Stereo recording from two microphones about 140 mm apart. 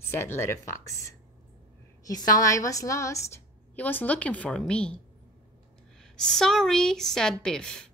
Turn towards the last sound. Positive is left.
turn(degrees=5)  # may be behind; listen again after turning